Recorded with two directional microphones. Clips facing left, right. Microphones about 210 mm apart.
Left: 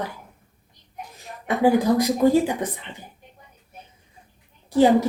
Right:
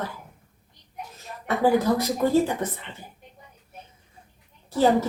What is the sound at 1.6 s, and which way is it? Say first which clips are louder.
A woman's voice: left 3 dB; 15° left (ahead or behind).